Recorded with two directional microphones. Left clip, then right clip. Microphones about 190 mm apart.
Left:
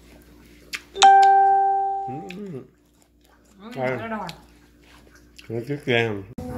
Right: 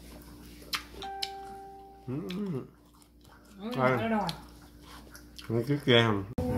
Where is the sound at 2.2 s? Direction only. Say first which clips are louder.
Left 2 dB; 15° right (ahead or behind).